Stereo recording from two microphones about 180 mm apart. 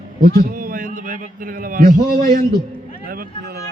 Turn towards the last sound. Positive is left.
turn(degrees=-55)  # may be behind; listen again after turning